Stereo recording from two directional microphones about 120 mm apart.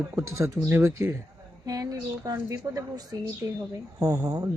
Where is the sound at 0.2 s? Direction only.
25° right (ahead or behind).